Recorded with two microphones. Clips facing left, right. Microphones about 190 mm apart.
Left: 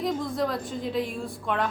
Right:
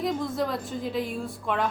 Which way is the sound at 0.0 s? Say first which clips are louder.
Even; centre (ahead or behind).